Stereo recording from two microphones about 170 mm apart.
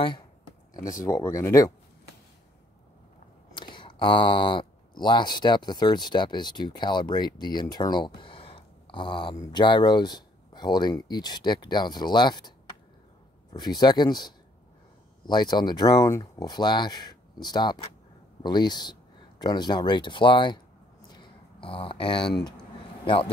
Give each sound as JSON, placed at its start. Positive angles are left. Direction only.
{"t": 1.0, "sound": "speech", "side_deg": 15}
{"t": 3.5, "sound": "speech", "side_deg": 30}
{"t": 21.1, "sound": "a sound", "side_deg": 30}
{"t": 23.0, "sound": "a man's voice", "side_deg": 30}